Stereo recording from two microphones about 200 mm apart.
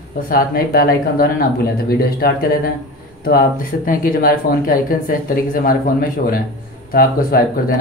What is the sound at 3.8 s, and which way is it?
Speech, 45° left (ahead or behind).